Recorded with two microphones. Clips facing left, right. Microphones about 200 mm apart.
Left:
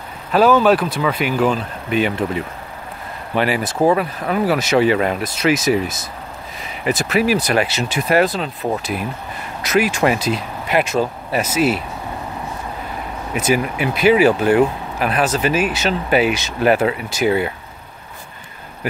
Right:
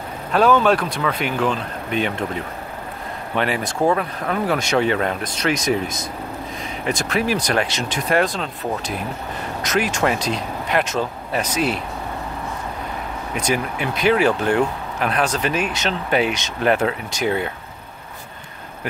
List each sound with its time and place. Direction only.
0.3 s speech: 5° left (ahead or behind)
3.3 s speech: 5° left (ahead or behind)
13.3 s speech: 5° left (ahead or behind)